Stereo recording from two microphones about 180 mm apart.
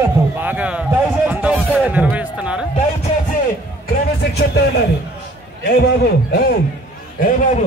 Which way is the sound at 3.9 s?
65° left (ahead or behind).